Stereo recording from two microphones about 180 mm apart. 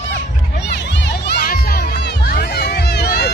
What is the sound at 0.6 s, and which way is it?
Music, 65° left (ahead or behind).